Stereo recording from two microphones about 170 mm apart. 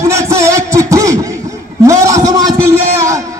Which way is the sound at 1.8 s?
20° right (ahead or behind).